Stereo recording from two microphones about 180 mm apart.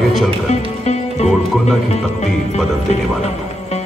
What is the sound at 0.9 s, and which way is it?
Music, 35° left (ahead or behind).